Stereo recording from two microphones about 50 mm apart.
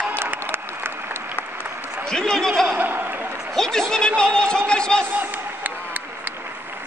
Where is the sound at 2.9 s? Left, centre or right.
Right.